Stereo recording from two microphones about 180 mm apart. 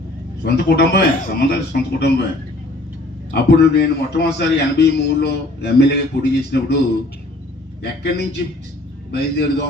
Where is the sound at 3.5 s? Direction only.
65° left (ahead or behind).